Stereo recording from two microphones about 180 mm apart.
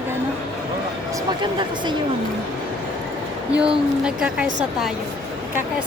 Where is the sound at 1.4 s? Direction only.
25° right (ahead or behind).